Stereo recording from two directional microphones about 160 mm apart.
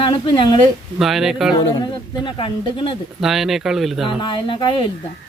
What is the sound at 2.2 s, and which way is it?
Speech, 30° left (ahead or behind).